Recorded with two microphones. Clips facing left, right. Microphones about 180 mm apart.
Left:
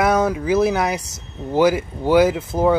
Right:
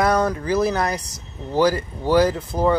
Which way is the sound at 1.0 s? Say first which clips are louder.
Left 4 dB; 25° left (ahead or behind).